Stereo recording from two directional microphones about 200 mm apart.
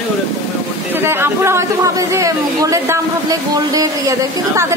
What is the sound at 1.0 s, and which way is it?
Speech, 10° right (ahead or behind).